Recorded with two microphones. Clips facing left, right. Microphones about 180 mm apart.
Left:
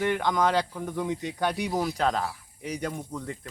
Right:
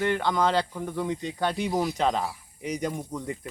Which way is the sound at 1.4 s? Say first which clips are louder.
Even; 15° left (ahead or behind).